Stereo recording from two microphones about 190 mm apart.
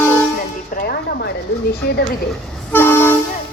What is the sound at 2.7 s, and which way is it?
Toot, 10° left (ahead or behind).